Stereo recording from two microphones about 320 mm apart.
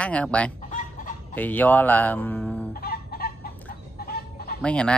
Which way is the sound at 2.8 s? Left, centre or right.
Left.